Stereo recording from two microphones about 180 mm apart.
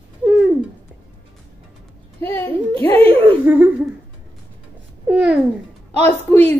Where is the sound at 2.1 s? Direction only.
10° left (ahead or behind).